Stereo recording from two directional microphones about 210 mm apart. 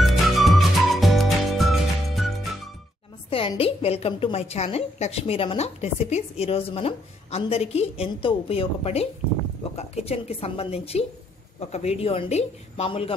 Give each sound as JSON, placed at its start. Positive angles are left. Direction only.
{"t": 0.0, "sound": "music", "side_deg": 0}
{"t": 3.3, "sound": "a woman's voice", "side_deg": 25}